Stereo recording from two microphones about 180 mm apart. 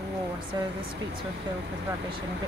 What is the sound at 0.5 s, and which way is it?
Speech, 25° right (ahead or behind).